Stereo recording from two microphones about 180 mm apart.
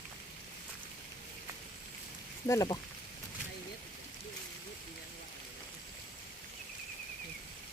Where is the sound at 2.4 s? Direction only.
20° left (ahead or behind).